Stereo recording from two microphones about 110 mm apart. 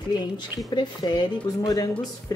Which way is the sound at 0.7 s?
40° left (ahead or behind).